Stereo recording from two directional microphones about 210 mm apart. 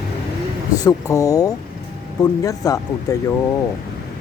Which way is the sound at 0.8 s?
15° left (ahead or behind).